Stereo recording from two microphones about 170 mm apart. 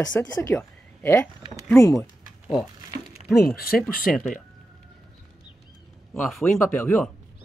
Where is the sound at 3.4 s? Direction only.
60° left (ahead or behind).